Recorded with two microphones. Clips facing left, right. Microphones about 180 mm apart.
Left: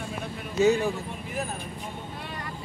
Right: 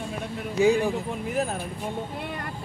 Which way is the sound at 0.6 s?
15° right (ahead or behind).